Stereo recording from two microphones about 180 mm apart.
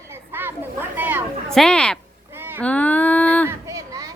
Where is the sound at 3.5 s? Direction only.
15° right (ahead or behind).